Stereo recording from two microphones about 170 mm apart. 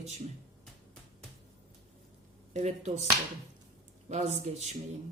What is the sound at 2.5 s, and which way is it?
Speech, 40° right (ahead or behind).